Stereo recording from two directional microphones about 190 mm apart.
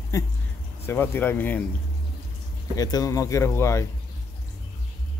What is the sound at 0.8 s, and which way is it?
Speech, 10° left (ahead or behind).